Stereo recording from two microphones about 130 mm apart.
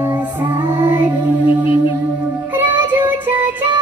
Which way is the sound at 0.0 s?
15° right (ahead or behind).